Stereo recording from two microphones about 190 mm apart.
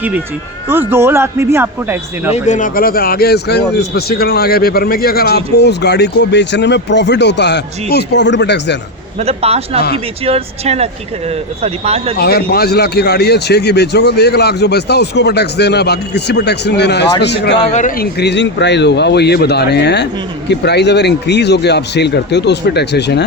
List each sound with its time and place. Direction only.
0.7 s a man's voice: 10° right (ahead or behind)
2.3 s a man's voice: 40° left (ahead or behind); by 8.8 s 65° left (ahead or behind)
9.1 s speech: 35° right (ahead or behind)
12.1 s a man's voice: 55° left (ahead or behind)
17.7 s a man's voice: 40° left (ahead or behind); by 23.2 s 60° left (ahead or behind)